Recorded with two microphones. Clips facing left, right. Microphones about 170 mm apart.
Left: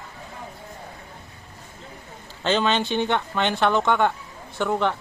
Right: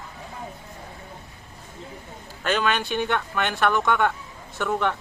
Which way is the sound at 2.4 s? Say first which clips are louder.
Left 2 dB; 25° left (ahead or behind).